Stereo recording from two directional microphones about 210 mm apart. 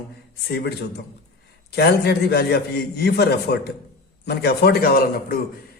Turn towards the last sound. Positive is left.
turn(degrees=45)  # may be behind; listen again after turning